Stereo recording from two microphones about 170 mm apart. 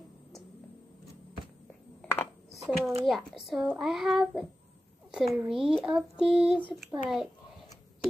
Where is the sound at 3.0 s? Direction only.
Centre (ahead or behind).